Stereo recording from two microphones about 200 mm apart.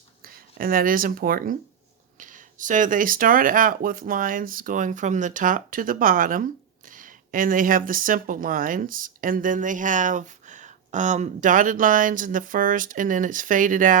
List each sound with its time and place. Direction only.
0.2 s speech: 45° right (ahead or behind)